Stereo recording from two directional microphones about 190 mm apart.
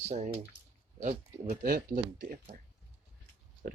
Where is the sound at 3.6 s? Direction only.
45° right (ahead or behind).